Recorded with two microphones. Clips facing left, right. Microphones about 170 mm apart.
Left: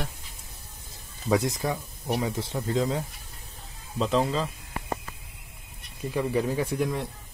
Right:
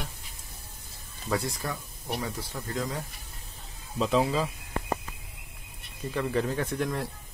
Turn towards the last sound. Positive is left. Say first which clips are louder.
# left 2 dB
turn(degrees=5)  # may be behind; listen again after turning